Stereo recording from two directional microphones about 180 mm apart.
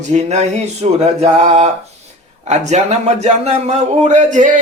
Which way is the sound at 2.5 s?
40° right (ahead or behind).